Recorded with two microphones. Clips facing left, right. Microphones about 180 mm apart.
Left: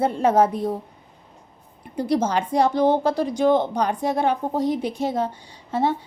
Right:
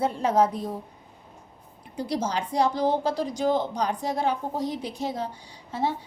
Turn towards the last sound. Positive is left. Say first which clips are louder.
# left 6 dB
turn(degrees=60)  # may be behind; listen again after turning